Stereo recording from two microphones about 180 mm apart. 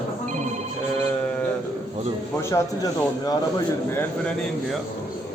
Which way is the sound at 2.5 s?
20° left (ahead or behind).